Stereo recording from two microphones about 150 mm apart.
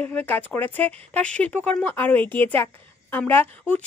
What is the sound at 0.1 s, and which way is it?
A woman's voice, 10° left (ahead or behind).